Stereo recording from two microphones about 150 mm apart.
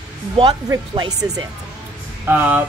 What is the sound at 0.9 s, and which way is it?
Speech, 30° right (ahead or behind).